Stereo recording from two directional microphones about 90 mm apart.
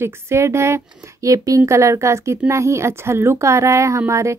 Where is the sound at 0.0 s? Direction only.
30° right (ahead or behind).